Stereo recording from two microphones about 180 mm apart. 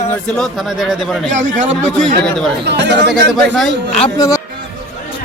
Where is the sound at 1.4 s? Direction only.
45° right (ahead or behind).